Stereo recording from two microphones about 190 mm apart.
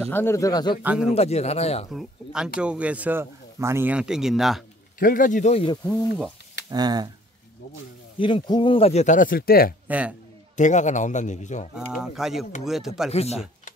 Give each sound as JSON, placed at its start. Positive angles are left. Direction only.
{"t": 0.1, "sound": "a man's voice", "side_deg": 15}
{"t": 0.8, "sound": "speech", "side_deg": -5}
{"t": 1.1, "sound": "speech", "side_deg": 35}
{"t": 1.9, "sound": "speech", "side_deg": 0}
{"t": 4.9, "sound": "a man's voice", "side_deg": 45}
{"t": 6.7, "sound": "speech", "side_deg": -20}
{"t": 8.2, "sound": "speech", "side_deg": 25}
{"t": 9.8, "sound": "a man's voice", "side_deg": -5}
{"t": 10.5, "sound": "speech", "side_deg": 40}
{"t": 11.7, "sound": "speech", "side_deg": -5}
{"t": 13.1, "sound": "speech", "side_deg": 35}